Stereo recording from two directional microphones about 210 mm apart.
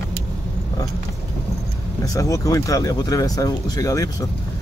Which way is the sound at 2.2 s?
15° left (ahead or behind).